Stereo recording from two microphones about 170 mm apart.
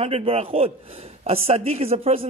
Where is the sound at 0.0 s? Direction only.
35° right (ahead or behind).